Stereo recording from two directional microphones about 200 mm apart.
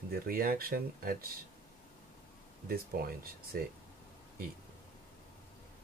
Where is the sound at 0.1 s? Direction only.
45° right (ahead or behind).